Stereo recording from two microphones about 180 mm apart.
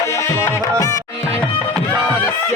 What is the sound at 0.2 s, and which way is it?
Music, 15° left (ahead or behind).